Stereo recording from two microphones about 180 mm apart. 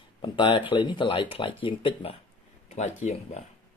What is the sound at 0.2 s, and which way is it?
Speech, 30° left (ahead or behind).